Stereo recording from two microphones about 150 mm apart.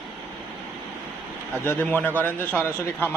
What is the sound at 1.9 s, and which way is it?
Speech, 10° left (ahead or behind).